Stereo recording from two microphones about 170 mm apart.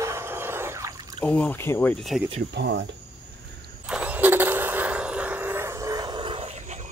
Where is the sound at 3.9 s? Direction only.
10° right (ahead or behind).